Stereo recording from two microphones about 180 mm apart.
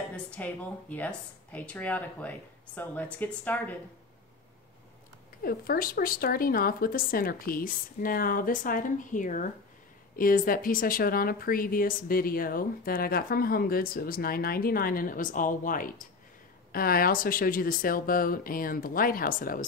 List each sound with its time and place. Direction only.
0.1 s speech: 5° left (ahead or behind)
5.4 s a woman's voice: 55° left (ahead or behind)